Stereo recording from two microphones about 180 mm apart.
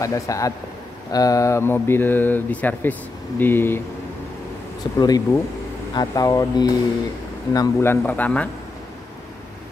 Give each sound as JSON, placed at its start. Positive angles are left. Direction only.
{"t": 0.0, "sound": "speech", "side_deg": 20}
{"t": 5.0, "sound": "speech", "side_deg": 20}